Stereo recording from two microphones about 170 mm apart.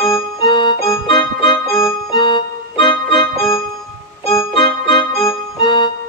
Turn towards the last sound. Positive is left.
turn(degrees=25)  # may be behind; listen again after turning